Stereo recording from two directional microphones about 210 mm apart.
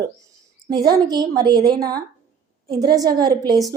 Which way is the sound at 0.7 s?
20° right (ahead or behind).